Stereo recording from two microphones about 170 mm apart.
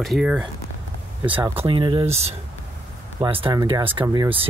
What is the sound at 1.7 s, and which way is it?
Speech, 30° right (ahead or behind).